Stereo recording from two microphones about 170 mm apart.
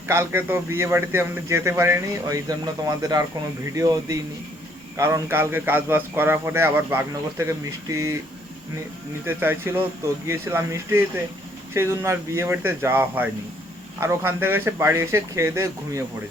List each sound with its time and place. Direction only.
0.1 s a man's voice: 15° right (ahead or behind)
9.2 s a man's voice: 15° right (ahead or behind)